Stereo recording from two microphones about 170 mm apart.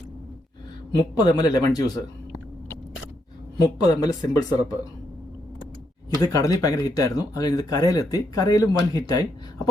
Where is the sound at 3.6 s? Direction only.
20° left (ahead or behind).